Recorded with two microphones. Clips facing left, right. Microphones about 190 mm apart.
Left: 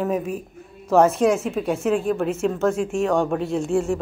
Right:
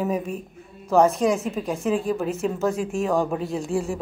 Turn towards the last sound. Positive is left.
turn(degrees=0)  # may be behind; listen again after turning